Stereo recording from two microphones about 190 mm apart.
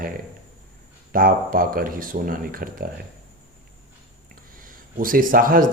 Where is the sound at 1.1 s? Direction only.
45° right (ahead or behind).